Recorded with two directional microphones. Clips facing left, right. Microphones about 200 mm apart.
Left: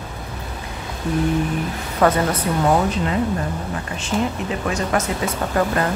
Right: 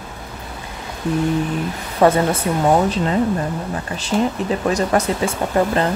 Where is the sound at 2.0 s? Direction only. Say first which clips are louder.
Right 3 dB; 25° right (ahead or behind).